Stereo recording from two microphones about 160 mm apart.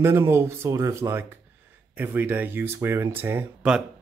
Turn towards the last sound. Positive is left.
turn(degrees=-10)  # may be behind; listen again after turning